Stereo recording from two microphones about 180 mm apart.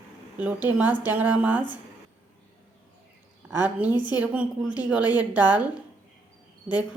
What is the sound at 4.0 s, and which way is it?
Speech, 25° left (ahead or behind).